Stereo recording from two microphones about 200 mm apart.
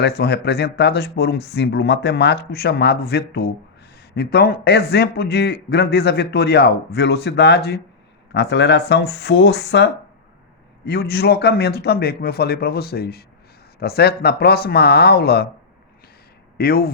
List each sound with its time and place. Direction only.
0.0 s a man's voice: 55° left (ahead or behind)
16.6 s a man's voice: 50° left (ahead or behind)